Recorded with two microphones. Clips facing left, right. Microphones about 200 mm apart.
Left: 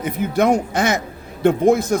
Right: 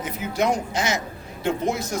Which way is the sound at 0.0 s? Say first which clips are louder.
Left 6 dB; 55° left (ahead or behind).